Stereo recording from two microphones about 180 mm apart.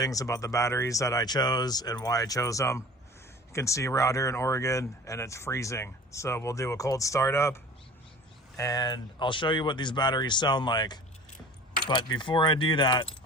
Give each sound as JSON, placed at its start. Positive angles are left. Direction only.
{"t": 0.0, "sound": "speech", "side_deg": 20}